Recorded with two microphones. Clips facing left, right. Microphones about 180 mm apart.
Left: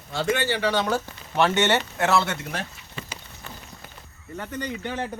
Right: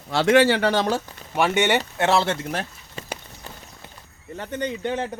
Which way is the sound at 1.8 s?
30° right (ahead or behind).